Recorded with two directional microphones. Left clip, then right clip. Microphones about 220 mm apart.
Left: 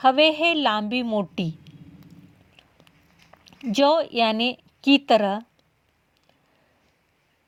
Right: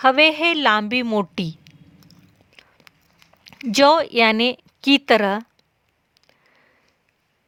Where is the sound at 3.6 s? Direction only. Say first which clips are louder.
Right 5 dB; 30° right (ahead or behind).